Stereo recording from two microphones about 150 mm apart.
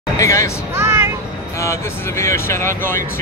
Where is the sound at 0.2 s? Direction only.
20° left (ahead or behind).